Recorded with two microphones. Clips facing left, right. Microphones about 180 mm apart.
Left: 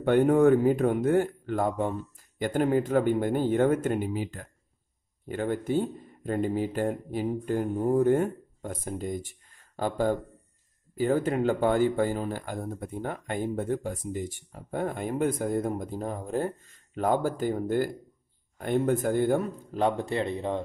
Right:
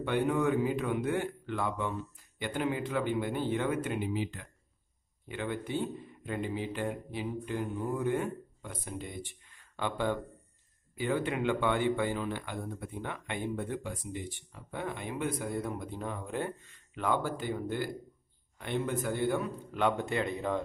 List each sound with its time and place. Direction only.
0.0 s speech: 45° left (ahead or behind); by 20.6 s 30° left (ahead or behind)